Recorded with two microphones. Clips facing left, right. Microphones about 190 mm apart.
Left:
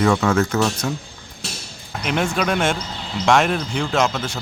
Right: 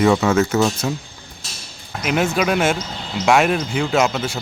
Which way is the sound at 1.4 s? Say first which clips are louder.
Left 9 dB; 65° left (ahead or behind).